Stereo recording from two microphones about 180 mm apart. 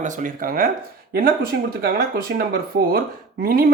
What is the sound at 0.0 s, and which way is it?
Speech, 50° right (ahead or behind).